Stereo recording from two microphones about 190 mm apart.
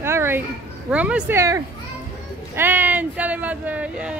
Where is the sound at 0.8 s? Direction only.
5° right (ahead or behind).